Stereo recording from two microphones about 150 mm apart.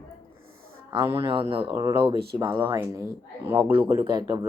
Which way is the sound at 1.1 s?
35° right (ahead or behind).